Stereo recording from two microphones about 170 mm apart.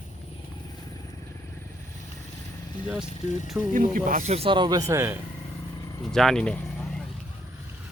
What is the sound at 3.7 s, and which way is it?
Speech, 50° right (ahead or behind).